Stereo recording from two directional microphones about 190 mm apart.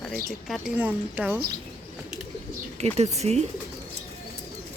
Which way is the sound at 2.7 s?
35° right (ahead or behind).